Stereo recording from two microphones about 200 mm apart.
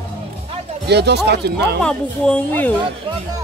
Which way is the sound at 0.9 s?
55° right (ahead or behind).